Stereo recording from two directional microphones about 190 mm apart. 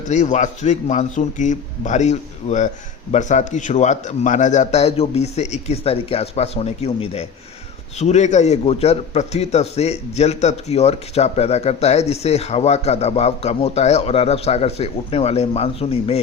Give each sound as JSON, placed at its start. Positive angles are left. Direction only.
{"t": 0.0, "sound": "a man's voice", "side_deg": 40}